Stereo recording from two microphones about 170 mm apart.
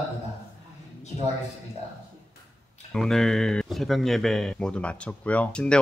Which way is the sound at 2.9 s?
5° left (ahead or behind).